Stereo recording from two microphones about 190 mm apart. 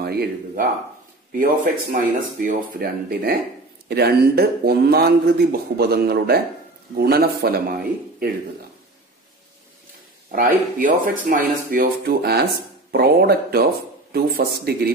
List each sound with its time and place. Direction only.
0.0 s speech: 55° right (ahead or behind)
10.3 s speech: 45° right (ahead or behind)